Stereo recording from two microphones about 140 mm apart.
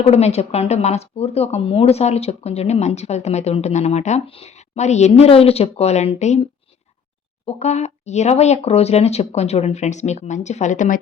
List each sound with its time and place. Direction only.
0.0 s speech: 50° left (ahead or behind)
7.4 s speech: 50° left (ahead or behind)